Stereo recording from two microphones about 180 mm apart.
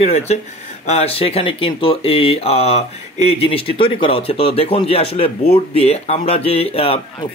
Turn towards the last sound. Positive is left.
turn(degrees=30)  # may be behind; listen again after turning